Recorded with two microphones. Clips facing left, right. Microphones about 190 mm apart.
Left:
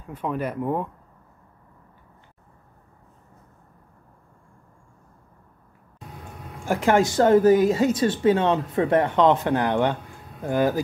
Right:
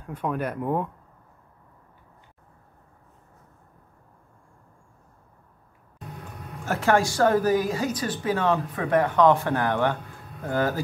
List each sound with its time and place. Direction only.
0.0 s speech: 5° left (ahead or behind)
6.6 s speech: 15° left (ahead or behind)